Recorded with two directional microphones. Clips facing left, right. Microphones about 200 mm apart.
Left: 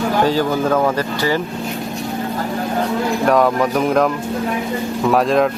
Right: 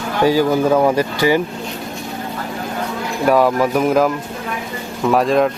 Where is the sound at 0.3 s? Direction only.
10° right (ahead or behind).